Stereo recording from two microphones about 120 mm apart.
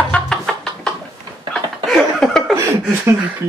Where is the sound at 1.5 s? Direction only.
5° left (ahead or behind).